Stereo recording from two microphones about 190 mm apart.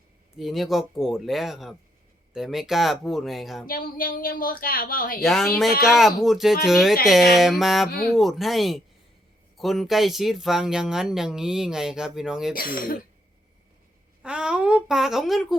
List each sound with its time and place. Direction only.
0.3 s speech: centre (ahead or behind)
3.7 s a woman's voice: 50° left (ahead or behind)
5.2 s speech: centre (ahead or behind)
12.5 s a woman's voice: 50° left (ahead or behind)
14.2 s speech: 5° right (ahead or behind)